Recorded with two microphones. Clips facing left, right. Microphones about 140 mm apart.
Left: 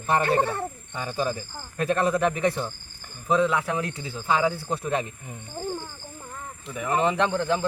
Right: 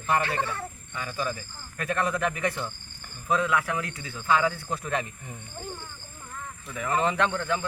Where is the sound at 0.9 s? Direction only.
30° left (ahead or behind).